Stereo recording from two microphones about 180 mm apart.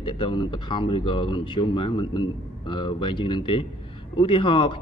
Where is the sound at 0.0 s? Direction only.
25° left (ahead or behind).